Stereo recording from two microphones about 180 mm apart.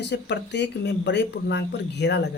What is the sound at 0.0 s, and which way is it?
Speech, 75° left (ahead or behind).